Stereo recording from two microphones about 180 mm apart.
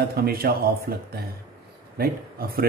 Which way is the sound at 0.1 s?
55° right (ahead or behind).